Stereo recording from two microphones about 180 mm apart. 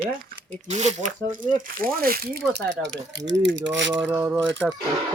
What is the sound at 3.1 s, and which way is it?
Speech, 80° right.